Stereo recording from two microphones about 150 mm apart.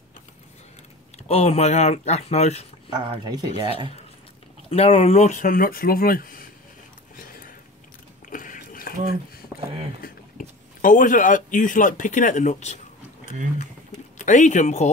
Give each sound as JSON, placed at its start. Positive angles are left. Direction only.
{"t": 1.1, "sound": "speech", "side_deg": 45}
{"t": 2.9, "sound": "speech", "side_deg": -30}
{"t": 4.6, "sound": "speech", "side_deg": 40}
{"t": 7.2, "sound": "a sound", "side_deg": 70}
{"t": 10.8, "sound": "speech", "side_deg": 60}
{"t": 14.1, "sound": "speech", "side_deg": 55}